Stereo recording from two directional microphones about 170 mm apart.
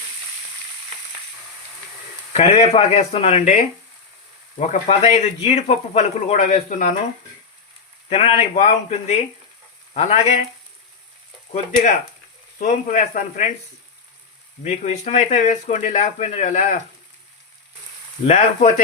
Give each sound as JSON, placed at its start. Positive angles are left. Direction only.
{"t": 2.3, "sound": "speech", "side_deg": 35}
{"t": 8.1, "sound": "speech", "side_deg": 35}
{"t": 11.5, "sound": "speech", "side_deg": 40}
{"t": 12.5, "sound": "speech", "side_deg": 50}
{"t": 14.6, "sound": "speech", "side_deg": 40}
{"t": 18.3, "sound": "speech", "side_deg": 40}